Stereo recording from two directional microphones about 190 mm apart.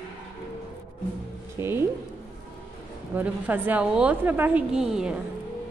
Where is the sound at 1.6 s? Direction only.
10° right (ahead or behind).